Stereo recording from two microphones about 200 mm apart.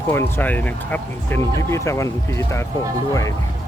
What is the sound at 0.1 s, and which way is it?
Speech, 10° left (ahead or behind).